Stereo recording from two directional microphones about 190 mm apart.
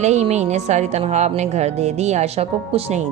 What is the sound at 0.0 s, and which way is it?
Speech, 35° right (ahead or behind).